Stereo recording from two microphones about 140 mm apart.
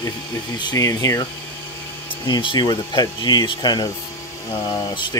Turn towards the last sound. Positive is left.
turn(degrees=35)  # may be behind; listen again after turning